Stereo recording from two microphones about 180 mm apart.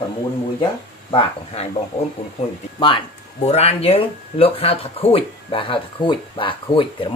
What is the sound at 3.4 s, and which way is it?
Speech, 35° left (ahead or behind).